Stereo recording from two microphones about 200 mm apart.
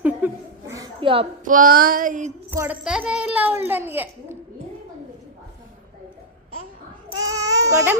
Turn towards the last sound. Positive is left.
turn(degrees=-15)  # may be behind; listen again after turning